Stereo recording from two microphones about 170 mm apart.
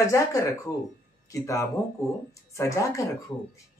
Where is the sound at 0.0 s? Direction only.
20° left (ahead or behind).